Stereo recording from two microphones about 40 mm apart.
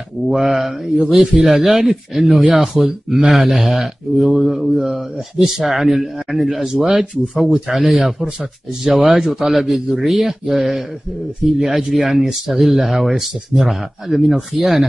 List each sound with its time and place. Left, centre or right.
0.3 s speech: centre
14.2 s speech: centre